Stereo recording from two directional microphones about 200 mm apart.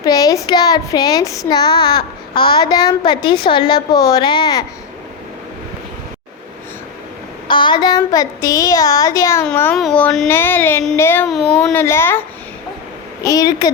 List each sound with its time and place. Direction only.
0.0 s a child's voice: 20° left (ahead or behind)
7.4 s a woman's voice: 20° left (ahead or behind)
11.3 s speech: centre (ahead or behind)
11.7 s a woman's voice: 10° left (ahead or behind)
13.2 s a child's voice: 20° left (ahead or behind)